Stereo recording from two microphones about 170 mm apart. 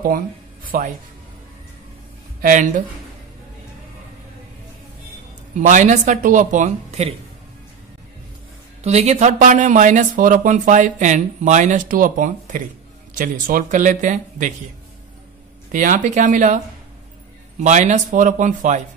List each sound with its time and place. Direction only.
0.7 s speech: 55° right (ahead or behind)
2.4 s speech: 50° right (ahead or behind)
5.6 s speech: 45° right (ahead or behind)
8.8 s speech: 40° right (ahead or behind)
15.7 s speech: 50° right (ahead or behind)